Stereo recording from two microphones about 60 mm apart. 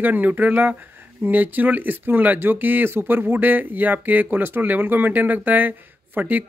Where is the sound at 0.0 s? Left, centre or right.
Right.